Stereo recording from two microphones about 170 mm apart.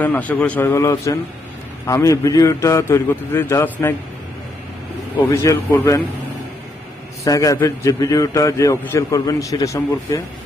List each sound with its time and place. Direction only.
0.0 s a man's voice: 10° left (ahead or behind)
5.3 s a man's voice: 15° left (ahead or behind)
7.2 s a man's voice: 20° left (ahead or behind)